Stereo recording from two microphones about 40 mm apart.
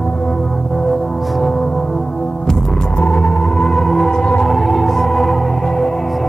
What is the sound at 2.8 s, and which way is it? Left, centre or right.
Music, left.